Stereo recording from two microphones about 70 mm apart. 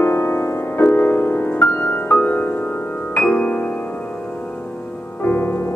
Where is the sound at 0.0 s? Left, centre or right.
Left.